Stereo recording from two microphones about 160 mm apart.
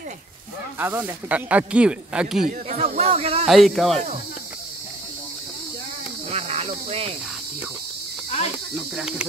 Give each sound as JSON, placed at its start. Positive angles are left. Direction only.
{"t": 0.7, "sound": "speech", "side_deg": -10}
{"t": 3.0, "sound": "speech", "side_deg": -40}
{"t": 3.4, "sound": "speech", "side_deg": 0}
{"t": 6.3, "sound": "snake", "side_deg": -40}